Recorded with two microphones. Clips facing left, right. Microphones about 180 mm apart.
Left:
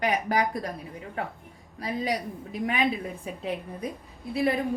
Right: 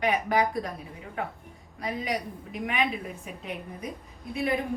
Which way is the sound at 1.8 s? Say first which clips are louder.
Left 2 dB; 35° left (ahead or behind).